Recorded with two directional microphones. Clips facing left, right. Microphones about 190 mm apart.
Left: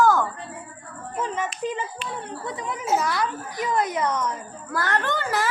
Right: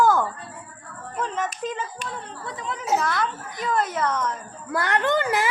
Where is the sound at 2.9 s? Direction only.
5° left (ahead or behind).